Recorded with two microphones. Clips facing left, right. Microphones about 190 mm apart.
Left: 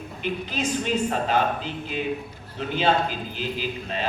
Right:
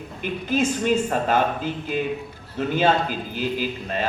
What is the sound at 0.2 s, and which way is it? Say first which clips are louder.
A man's voice: right 5 dB; 50° right (ahead or behind).